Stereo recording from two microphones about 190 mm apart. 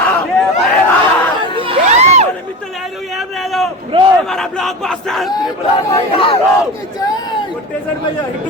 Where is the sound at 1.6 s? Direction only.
30° right (ahead or behind).